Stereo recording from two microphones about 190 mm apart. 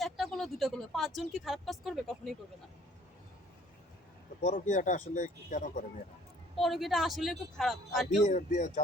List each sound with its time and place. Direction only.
0.0 s speech: centre (ahead or behind)
4.4 s speech: 40° left (ahead or behind)
6.6 s speech: centre (ahead or behind)
8.2 s speech: 40° left (ahead or behind)